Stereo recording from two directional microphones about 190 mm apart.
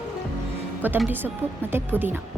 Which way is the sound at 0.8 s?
10° right (ahead or behind).